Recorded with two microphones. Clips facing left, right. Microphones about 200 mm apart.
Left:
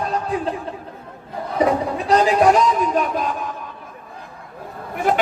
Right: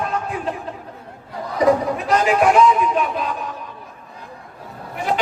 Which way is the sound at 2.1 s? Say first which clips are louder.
Left 1 dB; 35° left (ahead or behind).